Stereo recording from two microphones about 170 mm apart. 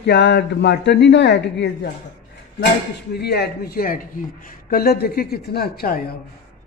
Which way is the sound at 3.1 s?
70° left (ahead or behind).